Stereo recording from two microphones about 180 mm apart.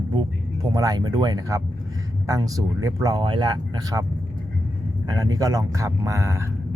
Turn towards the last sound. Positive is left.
turn(degrees=-15)  # may be behind; listen again after turning